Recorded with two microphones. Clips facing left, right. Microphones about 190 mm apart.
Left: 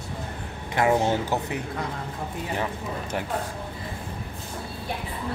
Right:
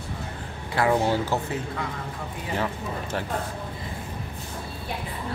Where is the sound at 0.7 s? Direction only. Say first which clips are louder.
Even; 20° left (ahead or behind).